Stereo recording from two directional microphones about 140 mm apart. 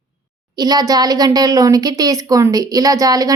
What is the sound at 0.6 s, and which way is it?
Speech, 30° right (ahead or behind).